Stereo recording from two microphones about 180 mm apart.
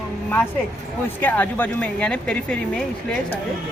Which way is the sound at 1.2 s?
10° left (ahead or behind).